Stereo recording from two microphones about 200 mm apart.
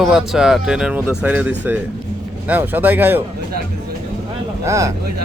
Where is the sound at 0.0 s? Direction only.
Centre (ahead or behind).